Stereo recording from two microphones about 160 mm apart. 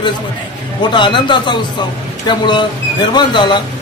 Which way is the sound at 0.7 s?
30° left (ahead or behind).